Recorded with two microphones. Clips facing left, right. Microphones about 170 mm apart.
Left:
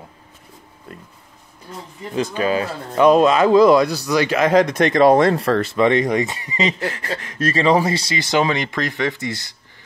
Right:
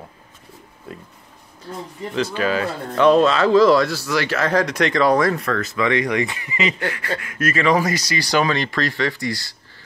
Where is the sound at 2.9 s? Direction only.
15° left (ahead or behind).